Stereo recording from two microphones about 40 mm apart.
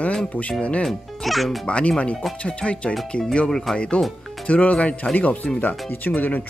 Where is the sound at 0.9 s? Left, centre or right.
Centre.